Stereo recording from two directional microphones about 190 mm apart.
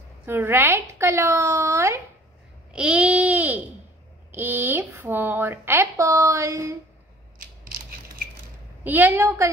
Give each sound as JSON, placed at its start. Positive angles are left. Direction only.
{"t": 0.3, "sound": "a woman's voice", "side_deg": -10}
{"t": 7.3, "sound": "mechanisms", "side_deg": -50}
{"t": 8.8, "sound": "a woman's voice", "side_deg": -10}